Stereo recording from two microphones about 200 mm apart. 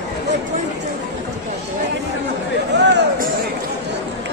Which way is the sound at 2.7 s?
60° right (ahead or behind).